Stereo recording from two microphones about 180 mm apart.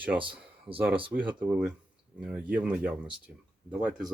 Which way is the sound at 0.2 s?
30° right (ahead or behind).